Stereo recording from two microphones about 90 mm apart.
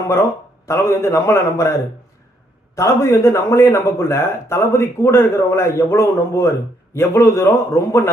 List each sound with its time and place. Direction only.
0.7 s a man's voice: 30° left (ahead or behind)